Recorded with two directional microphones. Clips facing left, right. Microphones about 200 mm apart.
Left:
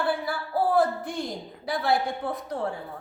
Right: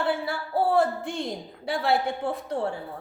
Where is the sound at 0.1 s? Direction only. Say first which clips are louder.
Right 1 dB; 25° right (ahead or behind).